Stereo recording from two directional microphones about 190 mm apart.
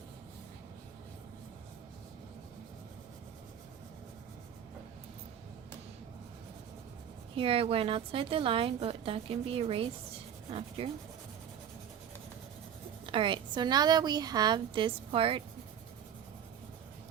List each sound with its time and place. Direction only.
7.3 s a woman's voice: 30° right (ahead or behind)
10.8 s rub: 30° right (ahead or behind)
13.1 s a woman's voice: 25° right (ahead or behind)